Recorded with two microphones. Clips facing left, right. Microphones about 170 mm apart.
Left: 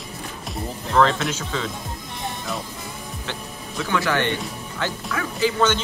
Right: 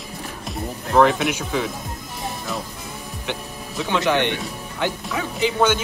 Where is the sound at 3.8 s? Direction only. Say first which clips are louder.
Right 2 dB; 20° right (ahead or behind).